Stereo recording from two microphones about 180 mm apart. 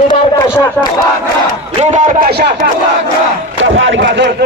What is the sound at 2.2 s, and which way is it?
Speech, 65° right (ahead or behind).